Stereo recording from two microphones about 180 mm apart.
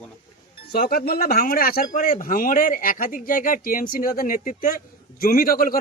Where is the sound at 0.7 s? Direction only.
55° left (ahead or behind).